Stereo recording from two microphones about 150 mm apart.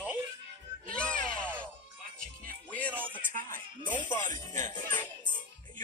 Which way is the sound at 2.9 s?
10° right (ahead or behind).